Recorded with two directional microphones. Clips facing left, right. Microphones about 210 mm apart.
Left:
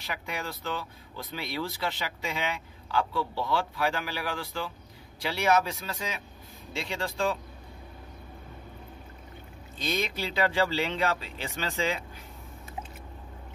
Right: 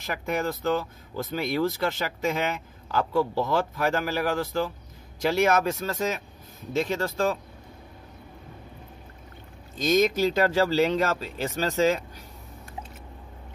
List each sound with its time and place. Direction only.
0.0 s speech: 45° right (ahead or behind)
9.8 s speech: 45° right (ahead or behind)